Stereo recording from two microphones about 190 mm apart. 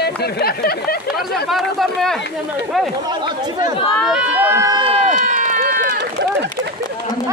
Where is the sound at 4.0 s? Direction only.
Centre (ahead or behind).